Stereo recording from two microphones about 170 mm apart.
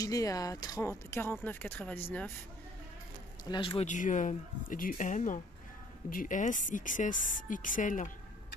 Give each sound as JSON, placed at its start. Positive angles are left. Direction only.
{"t": 0.0, "sound": "speech", "side_deg": 20}
{"t": 3.4, "sound": "speech", "side_deg": 30}
{"t": 3.8, "sound": "a woman's voice", "side_deg": 50}